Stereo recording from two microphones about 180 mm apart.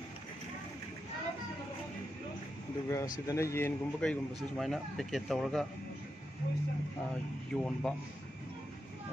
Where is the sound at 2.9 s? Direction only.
15° left (ahead or behind).